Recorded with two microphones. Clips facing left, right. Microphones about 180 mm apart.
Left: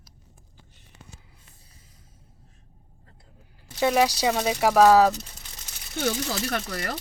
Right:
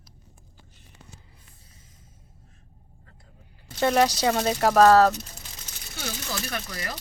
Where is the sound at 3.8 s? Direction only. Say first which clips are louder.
Even; 5° left (ahead or behind).